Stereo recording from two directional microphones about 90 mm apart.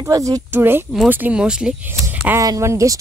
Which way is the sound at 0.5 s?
25° right (ahead or behind).